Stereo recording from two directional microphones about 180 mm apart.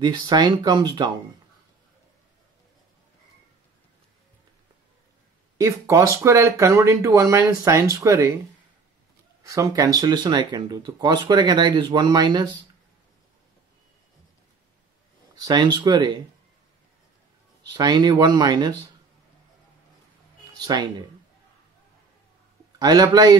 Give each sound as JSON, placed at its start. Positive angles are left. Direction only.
{"t": 0.0, "sound": "speech", "side_deg": -20}
{"t": 5.6, "sound": "speech", "side_deg": -15}
{"t": 9.5, "sound": "speech", "side_deg": -20}
{"t": 15.3, "sound": "speech", "side_deg": -25}
{"t": 17.7, "sound": "speech", "side_deg": -20}
{"t": 20.5, "sound": "speech", "side_deg": -25}
{"t": 22.8, "sound": "speech", "side_deg": -20}